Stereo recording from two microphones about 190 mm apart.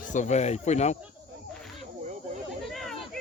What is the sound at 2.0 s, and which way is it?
Snake, 40° right (ahead or behind).